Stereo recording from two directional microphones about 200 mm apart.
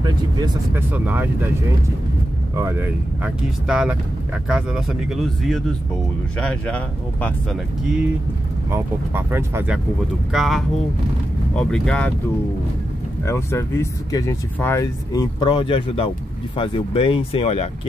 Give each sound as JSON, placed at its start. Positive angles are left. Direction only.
{"t": 0.0, "sound": "speech", "side_deg": -20}
{"t": 0.9, "sound": "speech", "side_deg": -10}
{"t": 2.5, "sound": "speech", "side_deg": -10}
{"t": 8.6, "sound": "speech", "side_deg": -15}
{"t": 10.3, "sound": "speech", "side_deg": 0}
{"t": 13.2, "sound": "speech", "side_deg": 15}